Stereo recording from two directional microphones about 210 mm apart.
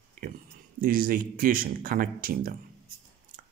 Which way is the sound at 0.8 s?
40° right (ahead or behind).